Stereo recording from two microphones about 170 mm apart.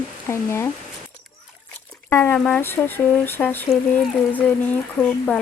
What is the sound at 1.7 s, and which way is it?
Dog, 5° left (ahead or behind).